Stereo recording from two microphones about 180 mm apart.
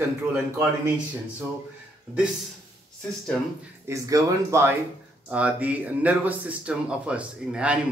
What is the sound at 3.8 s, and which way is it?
Speech, 15° right (ahead or behind).